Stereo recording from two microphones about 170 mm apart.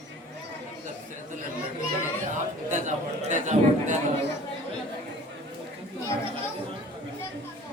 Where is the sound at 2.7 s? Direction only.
45° right (ahead or behind).